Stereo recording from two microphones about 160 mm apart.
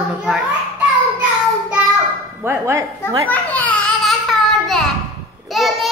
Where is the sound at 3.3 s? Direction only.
10° left (ahead or behind).